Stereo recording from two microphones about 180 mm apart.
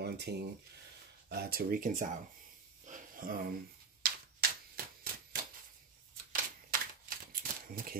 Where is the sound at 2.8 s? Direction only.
50° right (ahead or behind).